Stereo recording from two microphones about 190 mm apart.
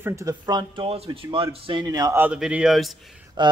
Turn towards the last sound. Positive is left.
turn(degrees=-25)  # may be behind; listen again after turning